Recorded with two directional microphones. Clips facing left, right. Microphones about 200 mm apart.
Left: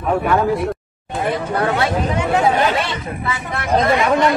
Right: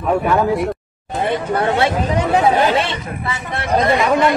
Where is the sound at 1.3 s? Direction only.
30° right (ahead or behind).